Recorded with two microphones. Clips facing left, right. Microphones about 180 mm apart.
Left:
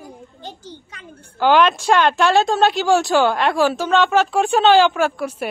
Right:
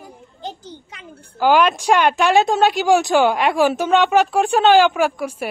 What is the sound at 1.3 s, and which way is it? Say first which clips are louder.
A woman's voice: even; 5° right (ahead or behind).